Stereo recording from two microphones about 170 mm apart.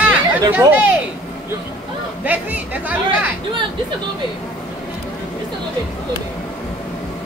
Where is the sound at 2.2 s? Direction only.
10° right (ahead or behind).